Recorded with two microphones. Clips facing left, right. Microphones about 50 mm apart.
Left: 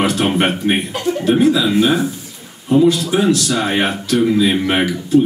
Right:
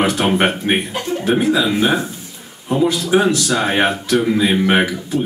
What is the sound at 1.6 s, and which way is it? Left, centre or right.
Speech, centre.